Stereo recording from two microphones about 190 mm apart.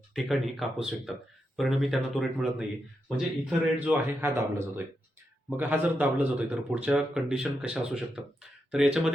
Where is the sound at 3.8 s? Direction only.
10° right (ahead or behind).